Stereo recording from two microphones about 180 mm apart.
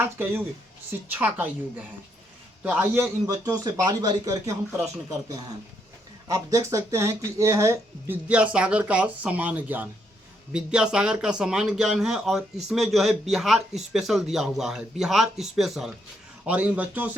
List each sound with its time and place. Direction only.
0.0 s speech: 10° right (ahead or behind)
2.6 s a man's voice: 10° right (ahead or behind)
6.2 s a man's voice: 20° right (ahead or behind)